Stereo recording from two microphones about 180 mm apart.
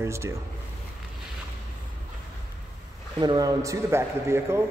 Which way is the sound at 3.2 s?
20° right (ahead or behind).